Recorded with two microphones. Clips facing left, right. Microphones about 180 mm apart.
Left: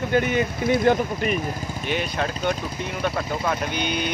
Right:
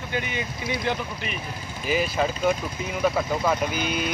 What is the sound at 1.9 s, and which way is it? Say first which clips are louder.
Speech: right 3 dB; 5° right (ahead or behind).